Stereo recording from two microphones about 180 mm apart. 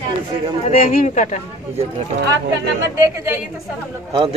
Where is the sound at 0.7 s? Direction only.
40° left (ahead or behind).